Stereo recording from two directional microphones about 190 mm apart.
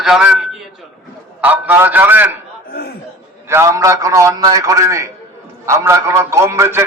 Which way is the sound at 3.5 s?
15° right (ahead or behind).